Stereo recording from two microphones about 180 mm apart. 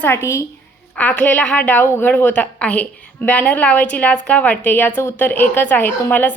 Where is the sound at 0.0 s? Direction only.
15° left (ahead or behind).